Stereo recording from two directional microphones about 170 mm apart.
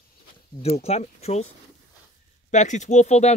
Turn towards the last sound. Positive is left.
turn(degrees=40)  # may be behind; listen again after turning